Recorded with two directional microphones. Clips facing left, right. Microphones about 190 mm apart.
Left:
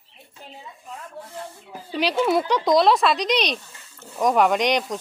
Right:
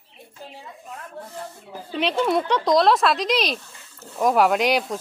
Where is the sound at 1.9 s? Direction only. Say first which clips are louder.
Left 1 dB; centre (ahead or behind).